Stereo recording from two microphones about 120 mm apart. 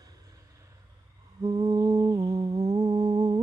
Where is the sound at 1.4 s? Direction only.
35° right (ahead or behind).